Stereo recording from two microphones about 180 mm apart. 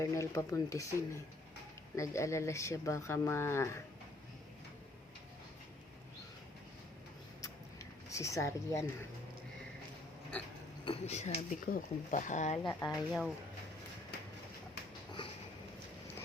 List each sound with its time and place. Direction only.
0.0 s speech: 15° left (ahead or behind)
8.1 s speech: 15° left (ahead or behind)
10.8 s speech: 35° left (ahead or behind)
12.8 s speech: centre (ahead or behind)